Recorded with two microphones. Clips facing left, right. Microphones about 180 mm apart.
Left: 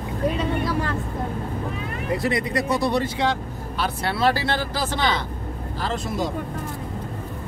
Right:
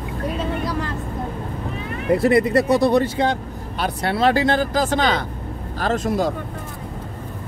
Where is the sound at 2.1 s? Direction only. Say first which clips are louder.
Right 8 dB; 55° right (ahead or behind).